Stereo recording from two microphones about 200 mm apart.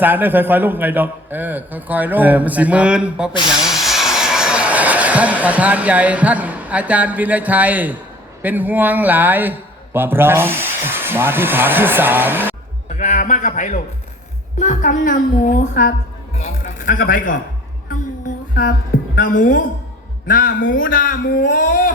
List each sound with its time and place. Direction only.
0.0 s a man's voice: 10° right (ahead or behind)
13.0 s a man's voice: 35° left (ahead or behind)
19.1 s speech: 40° left (ahead or behind)